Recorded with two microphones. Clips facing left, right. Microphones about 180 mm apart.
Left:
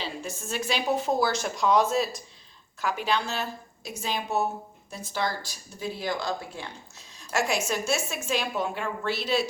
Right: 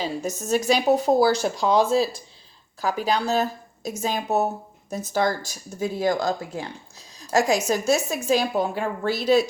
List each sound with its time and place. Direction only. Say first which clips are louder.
0.0 s a woman's voice: right 7 dB; 40° right (ahead or behind)